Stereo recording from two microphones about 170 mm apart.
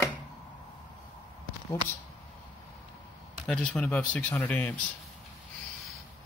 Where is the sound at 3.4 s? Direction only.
5° left (ahead or behind).